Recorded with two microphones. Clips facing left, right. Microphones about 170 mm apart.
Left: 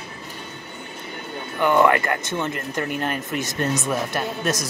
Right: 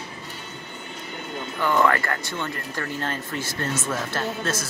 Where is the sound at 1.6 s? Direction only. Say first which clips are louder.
Left 4 dB; 20° left (ahead or behind).